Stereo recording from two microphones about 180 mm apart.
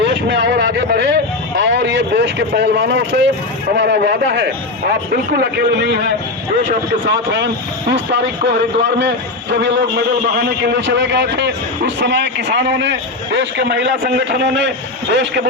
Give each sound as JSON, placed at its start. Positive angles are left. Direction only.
{"t": 0.0, "sound": "a man's voice", "side_deg": -75}
{"t": 7.1, "sound": "speech", "side_deg": -75}